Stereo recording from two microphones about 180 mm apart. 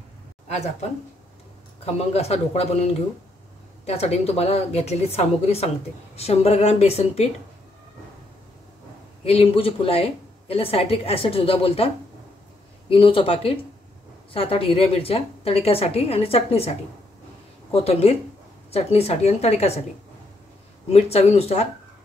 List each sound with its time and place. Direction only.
2.0 s a woman's voice: 35° left (ahead or behind)
9.2 s a woman's voice: 30° left (ahead or behind)
12.9 s a woman's voice: 30° left (ahead or behind)
17.7 s a woman's voice: 35° left (ahead or behind)
20.9 s a woman's voice: 35° left (ahead or behind)